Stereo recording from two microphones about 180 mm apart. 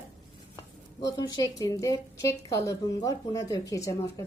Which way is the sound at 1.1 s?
25° left (ahead or behind).